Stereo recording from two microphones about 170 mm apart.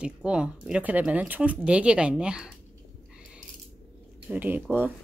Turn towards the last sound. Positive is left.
turn(degrees=-10)  # may be behind; listen again after turning